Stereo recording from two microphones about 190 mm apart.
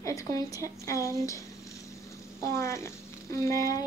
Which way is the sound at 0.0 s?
15° left (ahead or behind).